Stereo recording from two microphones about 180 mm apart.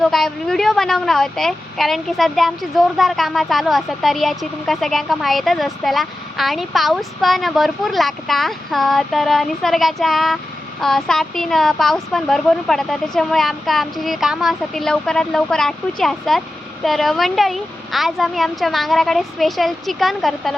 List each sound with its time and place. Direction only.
0.0 s a woman's voice: centre (ahead or behind)